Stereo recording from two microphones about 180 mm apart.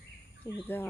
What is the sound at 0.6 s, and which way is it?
Speech, 10° left (ahead or behind).